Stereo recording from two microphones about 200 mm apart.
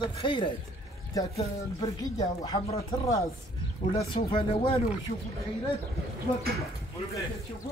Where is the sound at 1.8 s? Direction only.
20° left (ahead or behind).